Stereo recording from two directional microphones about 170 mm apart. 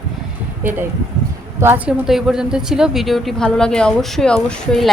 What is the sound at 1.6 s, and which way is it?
Speech, 15° right (ahead or behind).